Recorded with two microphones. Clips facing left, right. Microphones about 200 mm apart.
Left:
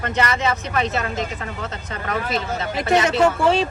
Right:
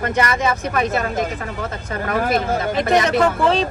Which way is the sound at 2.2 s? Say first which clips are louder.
Right 5 dB; 55° right (ahead or behind).